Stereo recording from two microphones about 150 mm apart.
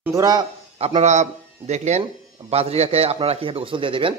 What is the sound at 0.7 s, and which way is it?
A man's voice, 45° right (ahead or behind).